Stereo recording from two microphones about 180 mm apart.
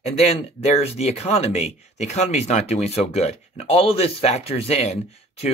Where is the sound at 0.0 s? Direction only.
40° left (ahead or behind).